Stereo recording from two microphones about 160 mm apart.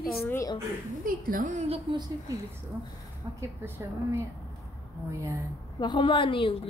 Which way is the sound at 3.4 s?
15° right (ahead or behind).